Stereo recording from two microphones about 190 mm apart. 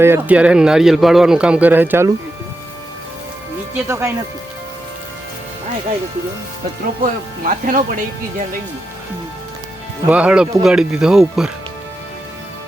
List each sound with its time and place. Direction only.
0.0 s speech: 10° right (ahead or behind)
3.8 s speech: 15° right (ahead or behind)
7.0 s speech: 45° right (ahead or behind)
10.1 s speech: 5° right (ahead or behind)